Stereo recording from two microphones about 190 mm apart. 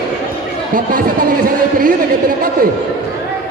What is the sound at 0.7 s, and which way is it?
Speech, 45° right (ahead or behind).